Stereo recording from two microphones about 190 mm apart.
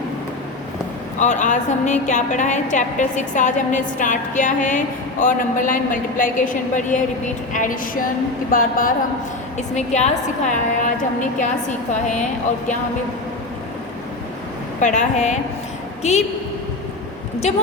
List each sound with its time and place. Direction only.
1.2 s a woman's voice: 40° left (ahead or behind)
9.6 s a woman's voice: 35° left (ahead or behind)
14.8 s a woman's voice: 40° left (ahead or behind)